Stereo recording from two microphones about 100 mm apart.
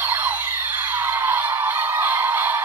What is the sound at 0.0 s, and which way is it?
Music, 20° right (ahead or behind).